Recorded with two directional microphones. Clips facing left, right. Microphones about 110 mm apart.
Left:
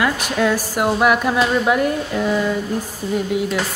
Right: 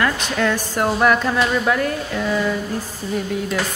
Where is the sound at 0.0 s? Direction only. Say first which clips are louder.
Left 1 dB; 10° left (ahead or behind).